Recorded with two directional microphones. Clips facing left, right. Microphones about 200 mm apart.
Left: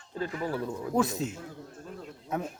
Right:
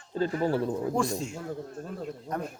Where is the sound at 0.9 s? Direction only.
Centre (ahead or behind).